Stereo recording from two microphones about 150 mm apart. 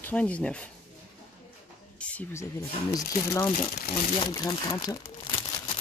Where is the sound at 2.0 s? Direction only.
15° left (ahead or behind).